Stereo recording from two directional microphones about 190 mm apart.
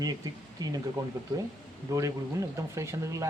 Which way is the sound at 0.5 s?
20° right (ahead or behind).